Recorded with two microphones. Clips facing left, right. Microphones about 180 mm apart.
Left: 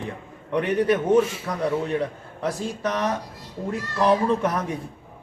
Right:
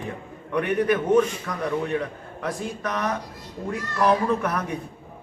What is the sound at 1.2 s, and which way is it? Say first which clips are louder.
Speech: even; 5° left (ahead or behind).